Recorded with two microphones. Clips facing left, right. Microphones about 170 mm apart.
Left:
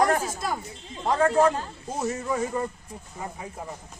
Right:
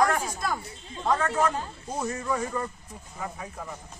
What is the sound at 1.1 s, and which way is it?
Speech, 30° left (ahead or behind).